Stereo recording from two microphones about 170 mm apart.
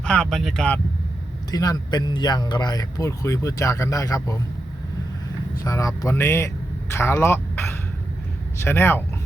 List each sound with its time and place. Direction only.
0.0 s speech: 5° left (ahead or behind)
1.5 s speech: 20° left (ahead or behind)
5.6 s speech: 20° left (ahead or behind)